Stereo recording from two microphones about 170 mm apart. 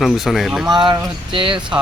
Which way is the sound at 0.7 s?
25° right (ahead or behind).